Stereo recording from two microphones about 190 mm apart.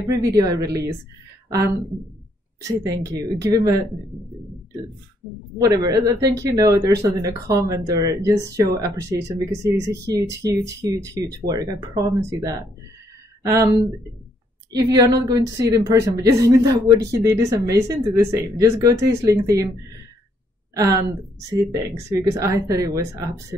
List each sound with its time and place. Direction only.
0.1 s speech: 20° right (ahead or behind)
2.8 s speech: 20° right (ahead or behind)
5.6 s speech: 20° right (ahead or behind)
14.7 s speech: 20° right (ahead or behind)
20.7 s speech: 20° right (ahead or behind)